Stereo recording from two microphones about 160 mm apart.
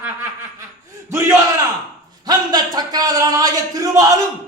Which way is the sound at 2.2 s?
25° right (ahead or behind).